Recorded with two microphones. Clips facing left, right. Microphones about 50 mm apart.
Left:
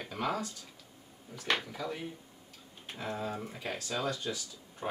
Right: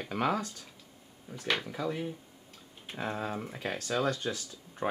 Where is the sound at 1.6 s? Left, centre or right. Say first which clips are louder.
Right 4 dB; centre.